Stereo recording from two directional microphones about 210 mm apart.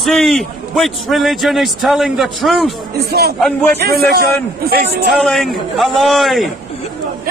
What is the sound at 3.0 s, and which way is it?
Speech, 50° right (ahead or behind).